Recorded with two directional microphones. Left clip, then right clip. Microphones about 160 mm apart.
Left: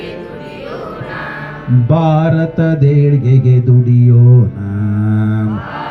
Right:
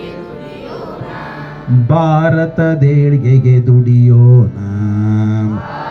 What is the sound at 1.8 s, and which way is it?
Music, 35° right (ahead or behind).